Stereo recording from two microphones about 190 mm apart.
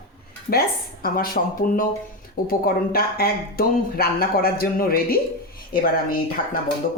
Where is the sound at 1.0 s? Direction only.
50° left (ahead or behind).